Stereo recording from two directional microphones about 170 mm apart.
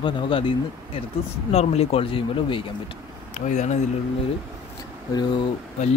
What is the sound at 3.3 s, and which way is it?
Speech, 45° left (ahead or behind).